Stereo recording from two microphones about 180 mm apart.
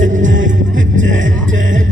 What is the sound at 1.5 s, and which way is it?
Music, 45° right (ahead or behind).